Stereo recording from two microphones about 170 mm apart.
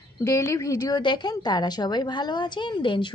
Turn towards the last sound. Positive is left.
turn(degrees=30)  # may be behind; listen again after turning